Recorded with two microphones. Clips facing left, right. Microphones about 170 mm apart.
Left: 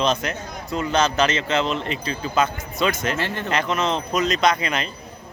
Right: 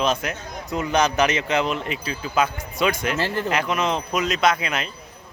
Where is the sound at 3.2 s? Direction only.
30° right (ahead or behind).